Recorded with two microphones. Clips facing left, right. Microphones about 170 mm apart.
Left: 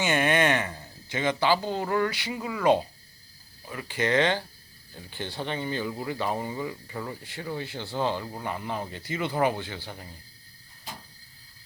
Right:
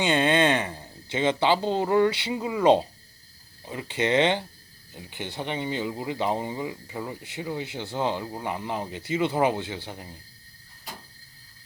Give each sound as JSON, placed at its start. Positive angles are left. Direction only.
{"t": 0.0, "sound": "speech", "side_deg": -20}